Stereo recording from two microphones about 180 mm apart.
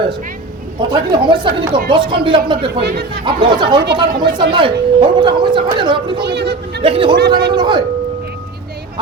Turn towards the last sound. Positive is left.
turn(degrees=-25)  # may be behind; listen again after turning